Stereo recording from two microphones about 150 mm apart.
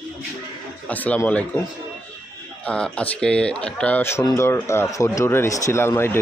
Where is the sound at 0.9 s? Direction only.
10° left (ahead or behind).